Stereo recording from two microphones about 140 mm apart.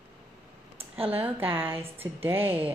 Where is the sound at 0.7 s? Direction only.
45° right (ahead or behind).